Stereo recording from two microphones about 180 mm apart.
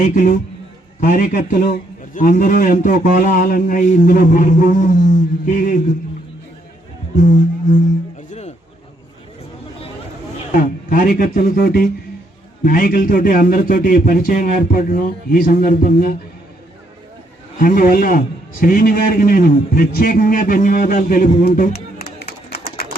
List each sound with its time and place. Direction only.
0.0 s a man's voice: 45° left (ahead or behind)
7.2 s a man's voice: 45° left (ahead or behind)
8.3 s a sound: 40° left (ahead or behind)
10.5 s a man's voice: 50° left (ahead or behind)
17.6 s a man's voice: 50° left (ahead or behind)